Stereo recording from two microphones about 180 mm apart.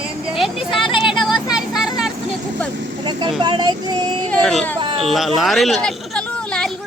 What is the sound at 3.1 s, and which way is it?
Child singing, 25° right (ahead or behind).